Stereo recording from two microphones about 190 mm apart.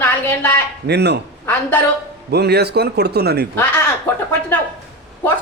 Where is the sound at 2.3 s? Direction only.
60° right (ahead or behind).